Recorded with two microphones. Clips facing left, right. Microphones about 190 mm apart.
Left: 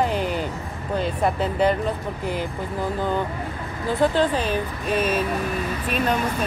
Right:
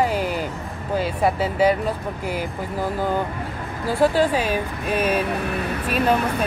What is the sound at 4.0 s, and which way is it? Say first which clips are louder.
Speech: right 2 dB; 10° right (ahead or behind).